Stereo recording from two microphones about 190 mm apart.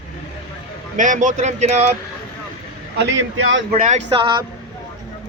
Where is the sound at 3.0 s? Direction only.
70° right (ahead or behind).